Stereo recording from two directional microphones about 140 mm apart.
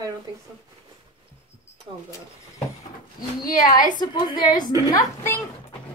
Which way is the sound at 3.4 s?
75° left (ahead or behind).